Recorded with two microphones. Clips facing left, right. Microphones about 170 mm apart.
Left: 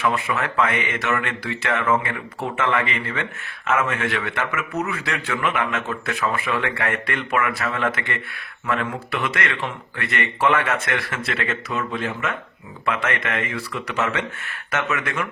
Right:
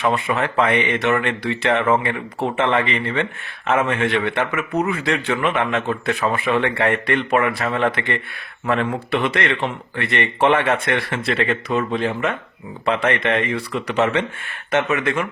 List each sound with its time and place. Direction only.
0.0 s speech: 25° right (ahead or behind)